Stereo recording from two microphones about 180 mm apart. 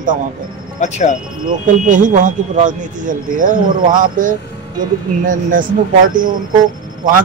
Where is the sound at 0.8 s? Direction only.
40° left (ahead or behind).